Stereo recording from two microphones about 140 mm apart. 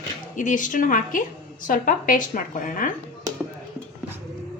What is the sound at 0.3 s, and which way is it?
Speech, 65° left (ahead or behind).